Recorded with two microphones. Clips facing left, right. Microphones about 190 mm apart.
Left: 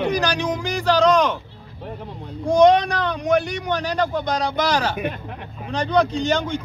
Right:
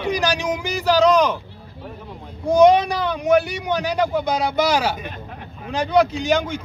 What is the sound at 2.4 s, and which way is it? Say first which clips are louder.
A man's voice: right 1 dB; 5° right (ahead or behind).